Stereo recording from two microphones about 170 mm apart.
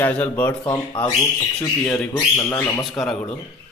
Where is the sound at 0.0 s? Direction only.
10° left (ahead or behind).